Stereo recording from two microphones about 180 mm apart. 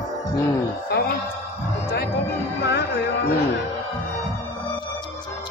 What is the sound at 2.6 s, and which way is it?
Music, 65° left (ahead or behind).